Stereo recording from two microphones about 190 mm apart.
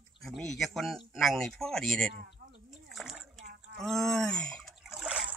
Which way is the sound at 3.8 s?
Centre (ahead or behind).